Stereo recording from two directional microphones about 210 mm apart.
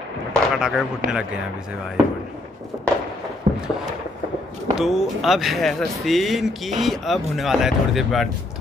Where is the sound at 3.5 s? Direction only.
30° right (ahead or behind).